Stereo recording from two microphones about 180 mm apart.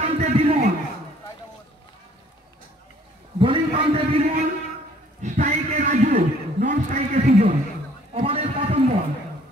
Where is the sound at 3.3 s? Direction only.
30° right (ahead or behind).